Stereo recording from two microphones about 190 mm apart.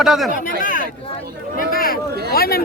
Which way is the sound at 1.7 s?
50° left (ahead or behind).